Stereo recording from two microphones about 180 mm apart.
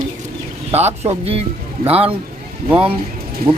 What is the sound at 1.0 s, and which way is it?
Speech, 35° right (ahead or behind).